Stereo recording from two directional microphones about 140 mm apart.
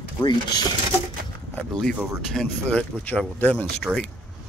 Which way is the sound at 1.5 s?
5° left (ahead or behind).